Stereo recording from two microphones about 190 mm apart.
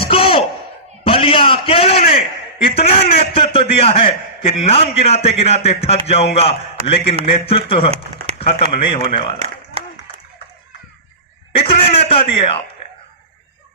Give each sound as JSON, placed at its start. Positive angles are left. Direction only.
{"t": 0.0, "sound": "a sound", "side_deg": 30}
{"t": 2.6, "sound": "a man's voice", "side_deg": 30}
{"t": 11.5, "sound": "a man's voice", "side_deg": 30}